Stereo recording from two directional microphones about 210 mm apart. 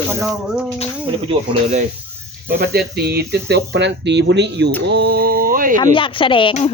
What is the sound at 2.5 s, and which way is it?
Speech, 50° right (ahead or behind).